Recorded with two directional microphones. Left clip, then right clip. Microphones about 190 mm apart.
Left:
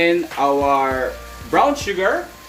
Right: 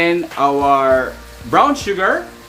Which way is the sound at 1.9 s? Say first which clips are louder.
Right 3 dB; 45° right (ahead or behind).